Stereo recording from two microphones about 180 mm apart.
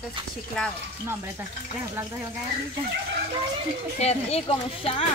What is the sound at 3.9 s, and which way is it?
Speech, 35° left (ahead or behind).